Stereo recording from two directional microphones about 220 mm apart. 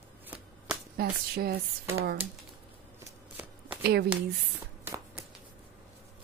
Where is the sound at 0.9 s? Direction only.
45° right (ahead or behind).